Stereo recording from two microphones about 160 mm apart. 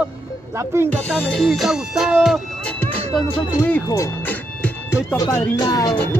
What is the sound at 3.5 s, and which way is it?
Speech, 15° left (ahead or behind).